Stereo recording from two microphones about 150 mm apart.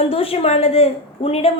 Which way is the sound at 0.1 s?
40° left (ahead or behind).